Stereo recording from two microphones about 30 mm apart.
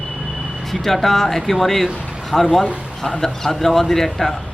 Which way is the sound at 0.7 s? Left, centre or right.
Centre.